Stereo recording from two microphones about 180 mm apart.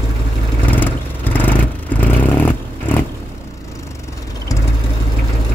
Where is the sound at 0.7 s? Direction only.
10° left (ahead or behind).